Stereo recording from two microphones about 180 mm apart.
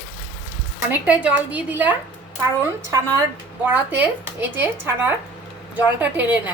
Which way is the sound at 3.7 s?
10° right (ahead or behind).